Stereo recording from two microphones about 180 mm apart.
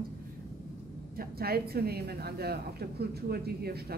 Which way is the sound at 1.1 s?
60° right (ahead or behind).